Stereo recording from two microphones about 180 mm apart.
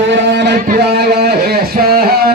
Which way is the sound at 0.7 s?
65° right (ahead or behind).